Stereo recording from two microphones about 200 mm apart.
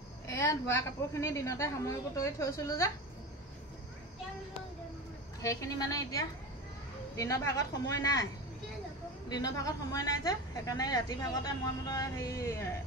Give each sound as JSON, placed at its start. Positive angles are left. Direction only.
{"t": 0.3, "sound": "a woman's voice", "side_deg": 15}
{"t": 5.4, "sound": "a woman's voice", "side_deg": 15}
{"t": 9.3, "sound": "a woman's voice", "side_deg": 15}